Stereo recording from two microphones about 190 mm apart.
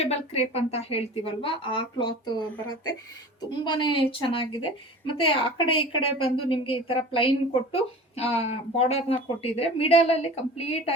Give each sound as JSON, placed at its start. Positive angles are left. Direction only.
{"t": 0.0, "sound": "a woman's voice", "side_deg": 35}